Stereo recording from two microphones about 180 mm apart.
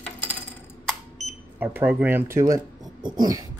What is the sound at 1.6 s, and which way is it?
Speech, 10° right (ahead or behind).